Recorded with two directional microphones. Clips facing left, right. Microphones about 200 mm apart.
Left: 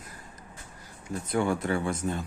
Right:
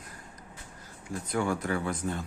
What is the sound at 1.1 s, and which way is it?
Speech, 25° left (ahead or behind).